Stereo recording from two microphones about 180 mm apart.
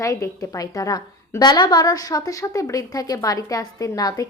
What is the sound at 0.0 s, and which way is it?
A woman's voice, 20° left (ahead or behind).